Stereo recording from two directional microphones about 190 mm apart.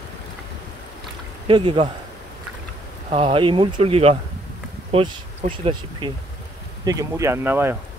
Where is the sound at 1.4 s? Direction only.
25° right (ahead or behind).